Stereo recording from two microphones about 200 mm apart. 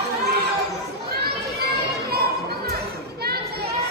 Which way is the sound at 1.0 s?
50° right (ahead or behind).